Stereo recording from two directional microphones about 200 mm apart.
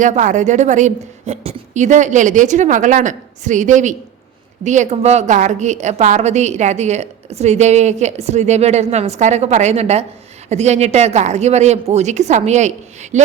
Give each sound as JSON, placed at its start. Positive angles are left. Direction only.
{"t": 0.0, "sound": "a woman's voice", "side_deg": -40}